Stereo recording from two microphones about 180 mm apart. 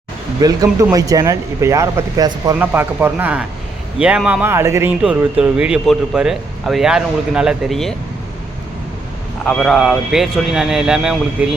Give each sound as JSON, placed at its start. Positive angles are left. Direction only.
{"t": 0.4, "sound": "speech", "side_deg": -20}
{"t": 9.4, "sound": "speech", "side_deg": 5}